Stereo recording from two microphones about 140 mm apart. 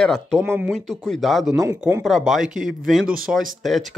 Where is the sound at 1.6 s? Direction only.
20° right (ahead or behind).